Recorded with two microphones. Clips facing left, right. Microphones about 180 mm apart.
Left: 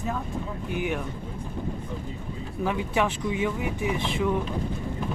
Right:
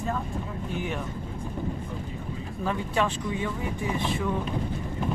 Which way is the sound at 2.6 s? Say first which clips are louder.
Left 2 dB; 15° left (ahead or behind).